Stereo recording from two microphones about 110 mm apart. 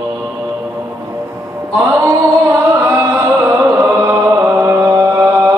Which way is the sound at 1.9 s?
25° right (ahead or behind).